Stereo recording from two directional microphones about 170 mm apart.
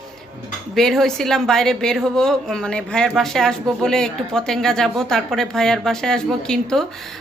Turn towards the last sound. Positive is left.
turn(degrees=5)  # may be behind; listen again after turning